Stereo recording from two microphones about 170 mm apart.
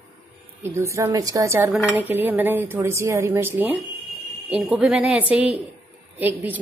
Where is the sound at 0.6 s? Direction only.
15° right (ahead or behind).